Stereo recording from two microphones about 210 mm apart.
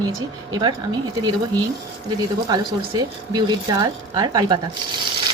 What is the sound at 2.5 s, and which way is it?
Speech, 20° right (ahead or behind).